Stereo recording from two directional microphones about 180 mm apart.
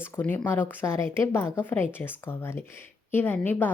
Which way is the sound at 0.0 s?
10° left (ahead or behind).